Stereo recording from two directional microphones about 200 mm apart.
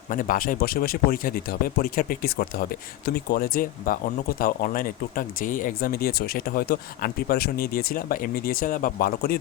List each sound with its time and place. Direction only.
0.1 s speech: 45° left (ahead or behind)